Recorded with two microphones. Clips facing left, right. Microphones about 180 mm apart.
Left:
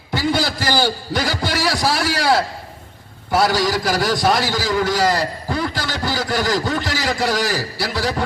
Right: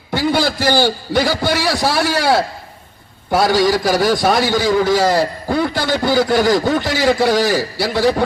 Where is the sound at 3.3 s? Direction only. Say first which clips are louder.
Right 4 dB; 55° right (ahead or behind).